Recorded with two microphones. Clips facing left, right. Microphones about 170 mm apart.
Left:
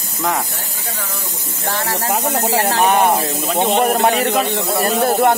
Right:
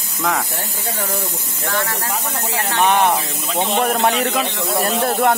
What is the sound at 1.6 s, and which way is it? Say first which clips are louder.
Speech: left 2 dB; 30° left (ahead or behind).